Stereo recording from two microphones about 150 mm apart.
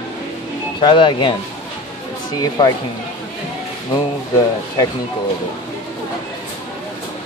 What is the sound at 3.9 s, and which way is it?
Speech, 25° left (ahead or behind).